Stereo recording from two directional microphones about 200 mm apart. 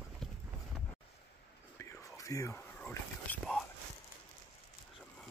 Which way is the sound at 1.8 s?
15° left (ahead or behind).